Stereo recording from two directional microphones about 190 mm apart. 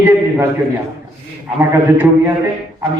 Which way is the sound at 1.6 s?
10° right (ahead or behind).